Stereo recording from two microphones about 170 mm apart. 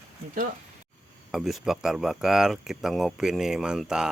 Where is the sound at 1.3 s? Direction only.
Centre (ahead or behind).